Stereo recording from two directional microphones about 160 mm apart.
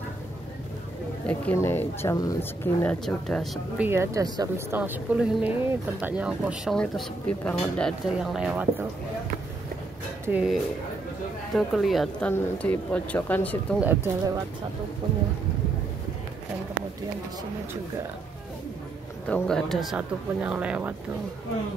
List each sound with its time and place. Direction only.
1.2 s speech: 10° left (ahead or behind)
2.8 s speech: 10° left (ahead or behind)
3.7 s a woman's voice: 15° right (ahead or behind)
4.7 s speech: 10° right (ahead or behind); by 7.9 s 5° left (ahead or behind)
8.2 s speech: 5° right (ahead or behind)
10.2 s speech: 10° right (ahead or behind)
11.5 s speech: centre (ahead or behind)
13.7 s a woman's voice: 10° right (ahead or behind)
19.2 s speech: 5° left (ahead or behind)